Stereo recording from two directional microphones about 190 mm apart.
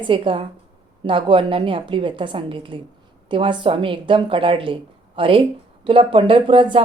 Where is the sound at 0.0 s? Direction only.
25° right (ahead or behind).